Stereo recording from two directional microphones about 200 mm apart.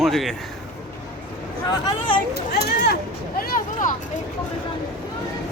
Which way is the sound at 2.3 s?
50° left (ahead or behind).